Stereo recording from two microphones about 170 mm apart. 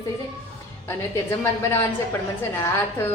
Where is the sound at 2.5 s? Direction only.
15° left (ahead or behind).